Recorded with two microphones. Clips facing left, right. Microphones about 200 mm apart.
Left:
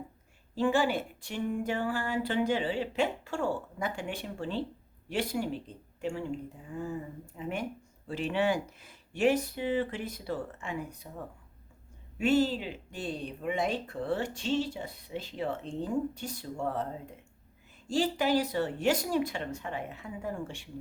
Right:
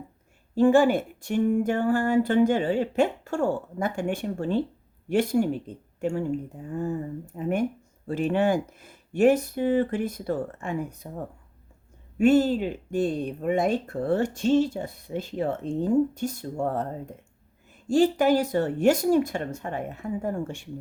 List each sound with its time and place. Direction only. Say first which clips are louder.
0.5 s speech: right 9 dB; 50° right (ahead or behind)
12.1 s speech: right 7 dB; 50° right (ahead or behind)
17.8 s speech: right 8 dB; 50° right (ahead or behind)